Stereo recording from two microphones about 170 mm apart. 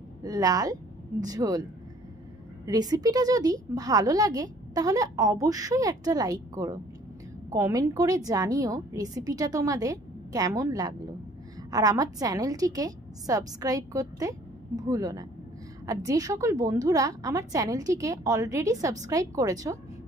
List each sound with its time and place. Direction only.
0.2 s a woman's voice: 20° right (ahead or behind)